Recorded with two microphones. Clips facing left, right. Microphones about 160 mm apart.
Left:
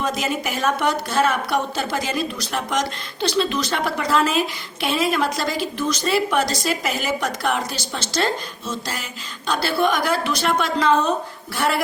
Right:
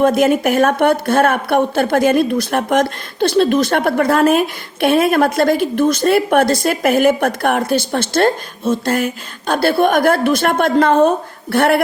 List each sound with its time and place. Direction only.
0.0 s a woman's voice: 55° right (ahead or behind)